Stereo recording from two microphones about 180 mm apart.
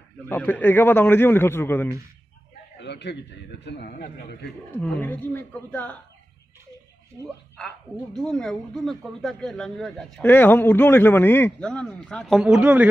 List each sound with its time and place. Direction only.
0.3 s a man's voice: 10° left (ahead or behind)
2.8 s a man's voice: 70° left (ahead or behind)
4.6 s a man's voice: 5° left (ahead or behind)
7.5 s a man's voice: 5° left (ahead or behind)